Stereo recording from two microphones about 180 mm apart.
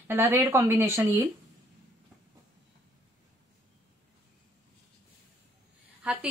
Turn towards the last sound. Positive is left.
turn(degrees=-5)  # may be behind; listen again after turning